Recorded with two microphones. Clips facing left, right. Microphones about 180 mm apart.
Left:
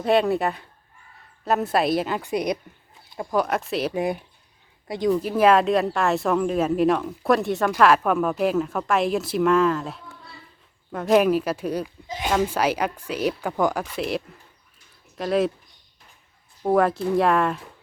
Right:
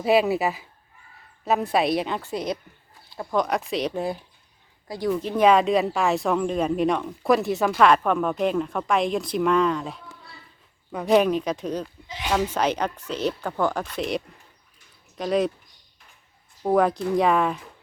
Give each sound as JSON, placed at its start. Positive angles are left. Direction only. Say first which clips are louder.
{"t": 0.0, "sound": "speech", "louder": "even", "side_deg": -5}
{"t": 2.2, "sound": "a woman's voice", "louder": "left 4 dB", "side_deg": 15}
{"t": 3.2, "sound": "speech", "louder": "left 1 dB", "side_deg": 5}
{"t": 5.1, "sound": "speech", "louder": "even", "side_deg": 5}
{"t": 12.0, "sound": "speech", "louder": "left 4 dB", "side_deg": 45}
{"t": 12.3, "sound": "a woman's voice", "louder": "left 1 dB", "side_deg": 10}
{"t": 16.6, "sound": "speech", "louder": "left 1 dB", "side_deg": 0}